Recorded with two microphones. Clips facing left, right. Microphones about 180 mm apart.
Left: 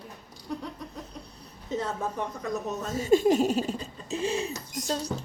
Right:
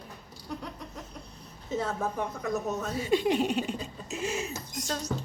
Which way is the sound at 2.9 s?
45° left (ahead or behind).